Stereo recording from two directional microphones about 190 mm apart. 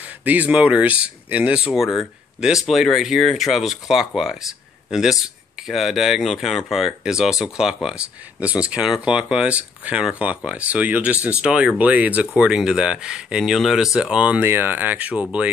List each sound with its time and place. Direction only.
0.2 s speech: 10° right (ahead or behind)
5.7 s speech: centre (ahead or behind)